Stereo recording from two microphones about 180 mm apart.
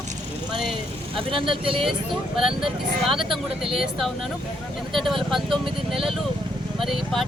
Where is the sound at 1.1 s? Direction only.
30° right (ahead or behind).